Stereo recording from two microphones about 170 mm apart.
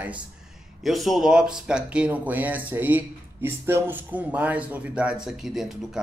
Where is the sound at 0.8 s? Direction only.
Centre (ahead or behind).